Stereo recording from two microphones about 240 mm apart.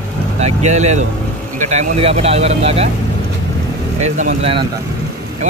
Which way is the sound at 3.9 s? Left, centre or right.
Right.